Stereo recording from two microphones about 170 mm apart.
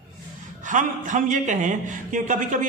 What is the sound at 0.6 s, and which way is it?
A man's voice, 50° right (ahead or behind).